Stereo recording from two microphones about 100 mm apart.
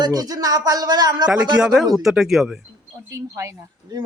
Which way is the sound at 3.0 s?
30° right (ahead or behind).